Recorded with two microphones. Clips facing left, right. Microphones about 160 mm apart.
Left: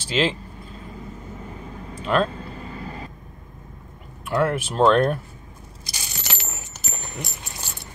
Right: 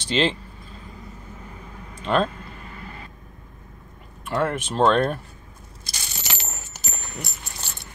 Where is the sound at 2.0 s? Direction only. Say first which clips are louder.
Even; 5° left (ahead or behind).